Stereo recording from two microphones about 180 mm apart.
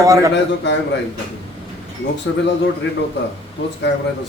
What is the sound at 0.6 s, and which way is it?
Speech, 75° left (ahead or behind).